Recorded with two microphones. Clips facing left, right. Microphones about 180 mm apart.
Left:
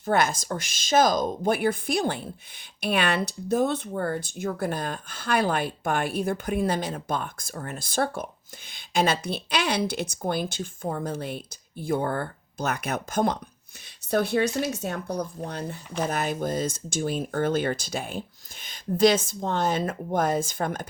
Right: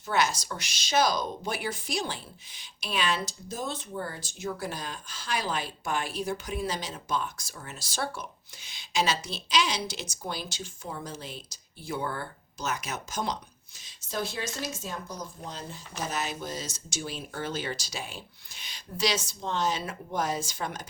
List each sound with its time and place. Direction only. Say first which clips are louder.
0.0 s speech: left 4 dB; 50° left (ahead or behind)